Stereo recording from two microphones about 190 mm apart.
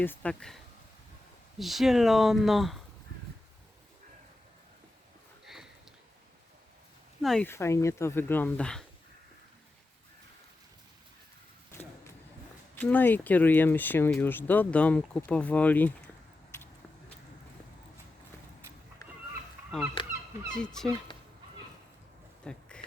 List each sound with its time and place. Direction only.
0.0 s speech: 10° left (ahead or behind)
7.2 s speech: 5° left (ahead or behind)
11.7 s vehicle: 15° left (ahead or behind)
12.7 s speech: 10° left (ahead or behind)
20.0 s fowl: 25° left (ahead or behind)
20.6 s speech: 5° left (ahead or behind)
22.5 s speech: 5° left (ahead or behind)